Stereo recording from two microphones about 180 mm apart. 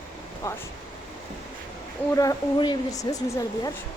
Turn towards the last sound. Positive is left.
turn(degrees=20)  # may be behind; listen again after turning